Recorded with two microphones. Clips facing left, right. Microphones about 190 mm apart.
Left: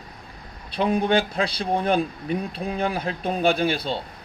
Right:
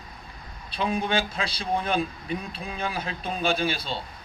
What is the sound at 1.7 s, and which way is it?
Speech, 55° left (ahead or behind).